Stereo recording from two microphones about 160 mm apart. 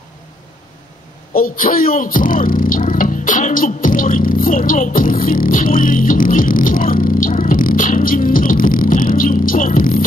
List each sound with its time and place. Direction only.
1.3 s music: 65° left (ahead or behind)